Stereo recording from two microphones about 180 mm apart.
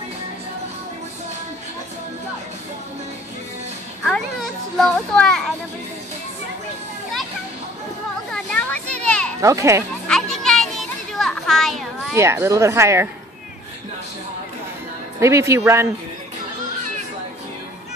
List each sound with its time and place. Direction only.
4.0 s a child's voice: 5° left (ahead or behind)
8.3 s a sound: 5° left (ahead or behind)
9.0 s children playing: 5° left (ahead or behind)
9.4 s speech: 15° right (ahead or behind)
10.0 s children playing: 5° left (ahead or behind)
12.2 s speech: 15° right (ahead or behind)
15.1 s speech: 15° right (ahead or behind)